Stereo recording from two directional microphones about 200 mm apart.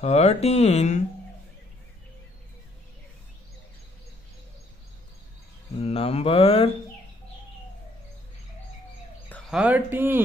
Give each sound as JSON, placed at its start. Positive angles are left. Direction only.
{"t": 0.0, "sound": "mantra", "side_deg": 35}
{"t": 5.8, "sound": "mantra", "side_deg": 30}
{"t": 9.5, "sound": "speech", "side_deg": -5}